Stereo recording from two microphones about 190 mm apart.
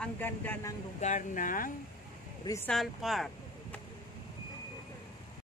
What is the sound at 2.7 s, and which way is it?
Speech, centre (ahead or behind).